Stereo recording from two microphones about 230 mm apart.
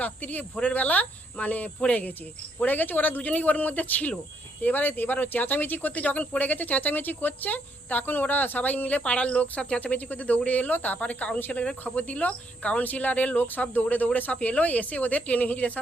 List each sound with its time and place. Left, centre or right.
0.0 s speech: centre